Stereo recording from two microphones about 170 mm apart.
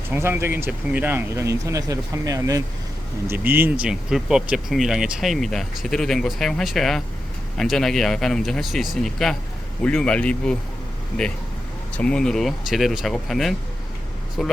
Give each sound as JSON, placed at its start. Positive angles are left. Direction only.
{"t": 0.1, "sound": "speech", "side_deg": -15}
{"t": 11.9, "sound": "speech", "side_deg": 5}